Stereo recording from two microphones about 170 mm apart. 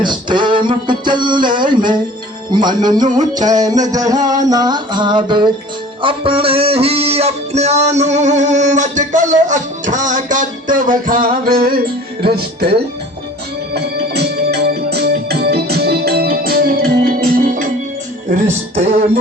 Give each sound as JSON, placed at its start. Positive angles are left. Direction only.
{"t": 0.0, "sound": "music", "side_deg": -25}
{"t": 3.1, "sound": "music", "side_deg": -45}
{"t": 3.4, "sound": "music", "side_deg": -20}
{"t": 13.7, "sound": "organ", "side_deg": -70}
{"t": 18.3, "sound": "speech", "side_deg": -45}